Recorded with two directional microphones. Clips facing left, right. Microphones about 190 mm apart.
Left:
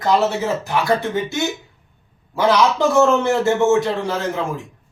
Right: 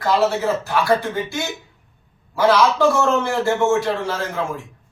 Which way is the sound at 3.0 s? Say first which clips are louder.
Left 4 dB; 20° left (ahead or behind).